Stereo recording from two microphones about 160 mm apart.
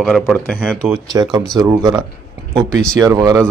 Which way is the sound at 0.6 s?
10° right (ahead or behind).